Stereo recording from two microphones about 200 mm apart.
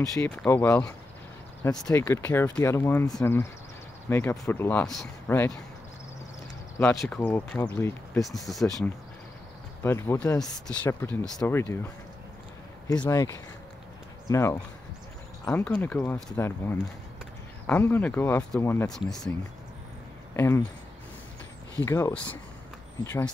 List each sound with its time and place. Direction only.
0.0 s speech: 15° left (ahead or behind)
6.8 s speech: 5° left (ahead or behind)
9.8 s speech: 10° left (ahead or behind)
12.8 s speech: 20° left (ahead or behind); by 19.3 s centre (ahead or behind)
20.3 s speech: 15° left (ahead or behind)
21.8 s speech: 15° left (ahead or behind)